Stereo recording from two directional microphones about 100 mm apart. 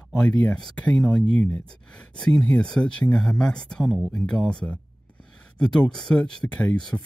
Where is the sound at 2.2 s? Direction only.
10° left (ahead or behind).